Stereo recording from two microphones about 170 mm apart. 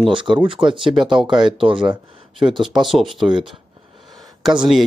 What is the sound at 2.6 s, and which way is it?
Speech, centre (ahead or behind).